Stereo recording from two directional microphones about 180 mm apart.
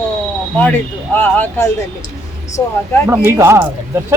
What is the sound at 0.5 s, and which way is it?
Speech, 10° left (ahead or behind).